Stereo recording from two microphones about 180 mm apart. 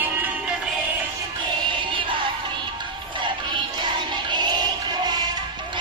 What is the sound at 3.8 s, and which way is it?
Music, 25° right (ahead or behind).